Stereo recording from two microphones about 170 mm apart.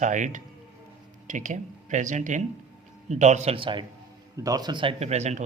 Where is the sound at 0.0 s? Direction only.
45° right (ahead or behind).